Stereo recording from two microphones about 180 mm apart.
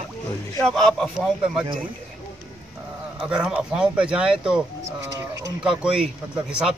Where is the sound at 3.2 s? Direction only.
5° right (ahead or behind).